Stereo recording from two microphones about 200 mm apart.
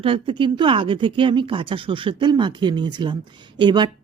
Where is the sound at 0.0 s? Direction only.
25° right (ahead or behind).